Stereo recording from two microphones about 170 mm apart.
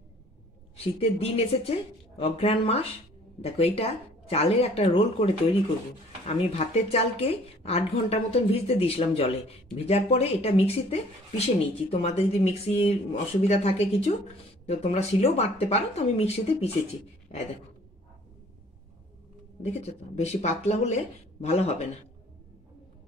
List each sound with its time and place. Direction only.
0.9 s a woman's voice: 35° left (ahead or behind)
19.6 s a woman's voice: 40° left (ahead or behind)